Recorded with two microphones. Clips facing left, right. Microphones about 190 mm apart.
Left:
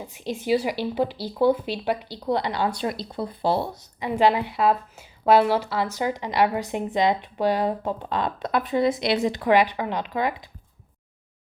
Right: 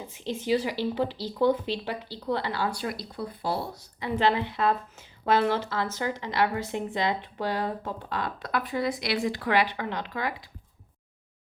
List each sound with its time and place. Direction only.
0.1 s speech: 15° left (ahead or behind)